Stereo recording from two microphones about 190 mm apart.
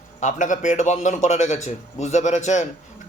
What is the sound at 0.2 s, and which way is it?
A man's voice, 40° left (ahead or behind).